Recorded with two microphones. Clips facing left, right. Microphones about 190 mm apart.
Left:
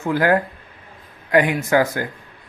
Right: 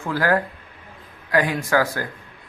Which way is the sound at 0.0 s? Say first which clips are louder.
Left 3 dB; 20° left (ahead or behind).